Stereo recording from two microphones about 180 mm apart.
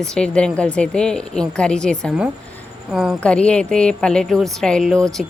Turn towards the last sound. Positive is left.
turn(degrees=0)  # may be behind; listen again after turning